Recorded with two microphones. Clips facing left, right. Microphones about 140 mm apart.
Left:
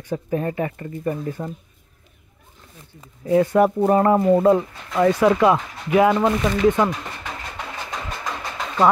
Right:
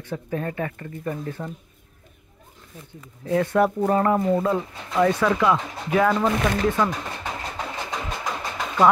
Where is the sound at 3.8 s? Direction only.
25° left (ahead or behind).